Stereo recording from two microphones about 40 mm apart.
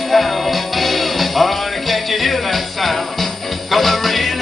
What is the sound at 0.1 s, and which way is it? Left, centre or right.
Music, centre.